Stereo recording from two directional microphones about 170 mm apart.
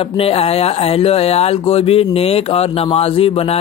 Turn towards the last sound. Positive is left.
turn(degrees=35)  # may be behind; listen again after turning